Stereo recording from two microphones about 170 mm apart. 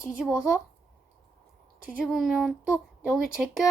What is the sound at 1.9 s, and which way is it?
A woman's voice, centre (ahead or behind).